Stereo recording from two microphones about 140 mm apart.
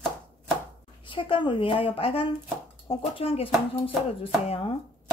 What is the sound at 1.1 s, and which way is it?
Speech, 35° left (ahead or behind).